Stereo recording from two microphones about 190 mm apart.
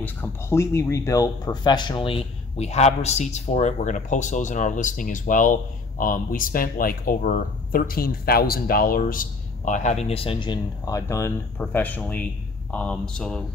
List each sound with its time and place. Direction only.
0.0 s speech: 10° left (ahead or behind)